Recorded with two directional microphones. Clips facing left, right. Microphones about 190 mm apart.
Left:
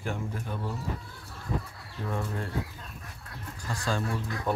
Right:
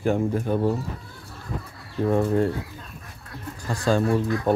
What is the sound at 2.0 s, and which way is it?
Speech, 40° right (ahead or behind).